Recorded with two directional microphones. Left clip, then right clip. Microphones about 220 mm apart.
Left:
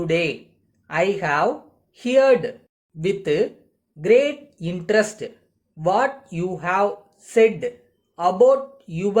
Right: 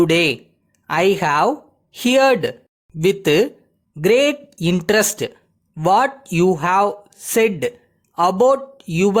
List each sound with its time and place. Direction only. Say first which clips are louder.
0.0 s speech: right 6 dB; 45° right (ahead or behind)